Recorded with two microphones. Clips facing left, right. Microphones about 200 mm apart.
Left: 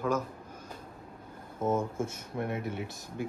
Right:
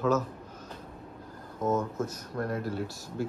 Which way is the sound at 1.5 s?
30° left (ahead or behind).